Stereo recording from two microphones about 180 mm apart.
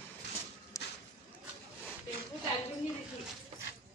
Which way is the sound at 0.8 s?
15° left (ahead or behind).